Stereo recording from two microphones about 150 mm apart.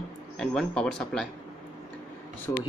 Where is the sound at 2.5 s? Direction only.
20° left (ahead or behind).